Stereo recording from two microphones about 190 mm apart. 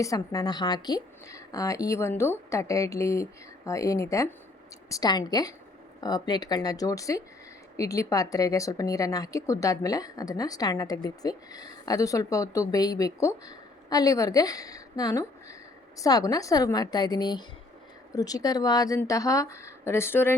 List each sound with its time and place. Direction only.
0.0 s a woman's voice: 15° left (ahead or behind)